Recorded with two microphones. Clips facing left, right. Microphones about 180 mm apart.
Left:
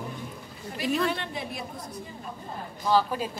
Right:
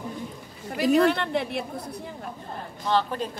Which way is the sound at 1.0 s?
65° right (ahead or behind).